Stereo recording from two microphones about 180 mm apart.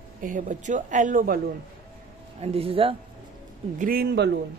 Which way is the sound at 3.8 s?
55° right (ahead or behind).